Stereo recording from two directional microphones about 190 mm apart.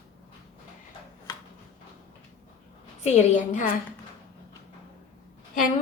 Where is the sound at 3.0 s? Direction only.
40° left (ahead or behind).